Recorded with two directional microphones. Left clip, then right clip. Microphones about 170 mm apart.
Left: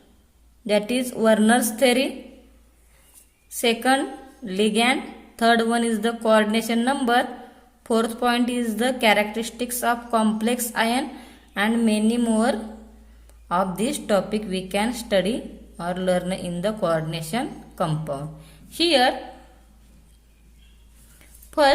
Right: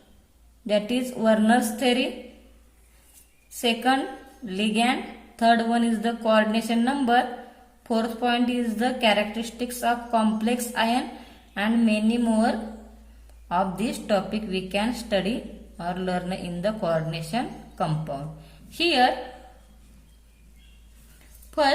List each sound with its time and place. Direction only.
0.7 s a woman's voice: 45° left (ahead or behind)
3.5 s a woman's voice: 45° left (ahead or behind)